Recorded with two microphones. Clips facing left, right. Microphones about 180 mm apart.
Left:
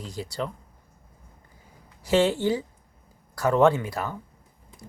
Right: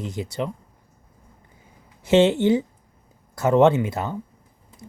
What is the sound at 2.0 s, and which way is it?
Speech, 20° right (ahead or behind).